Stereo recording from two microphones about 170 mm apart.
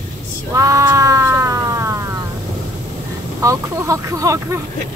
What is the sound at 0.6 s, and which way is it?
Cat, 20° right (ahead or behind).